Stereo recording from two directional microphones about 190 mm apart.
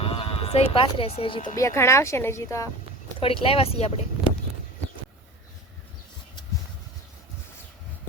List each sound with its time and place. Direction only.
0.0 s speech: 30° left (ahead or behind)
1.5 s speech: 15° left (ahead or behind)
3.2 s speech: 30° left (ahead or behind)